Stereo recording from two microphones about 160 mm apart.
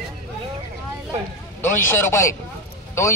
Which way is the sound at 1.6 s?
15° left (ahead or behind).